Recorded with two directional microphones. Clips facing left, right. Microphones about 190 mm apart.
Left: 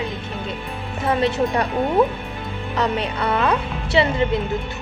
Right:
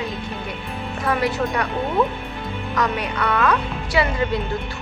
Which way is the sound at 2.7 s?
30° left (ahead or behind).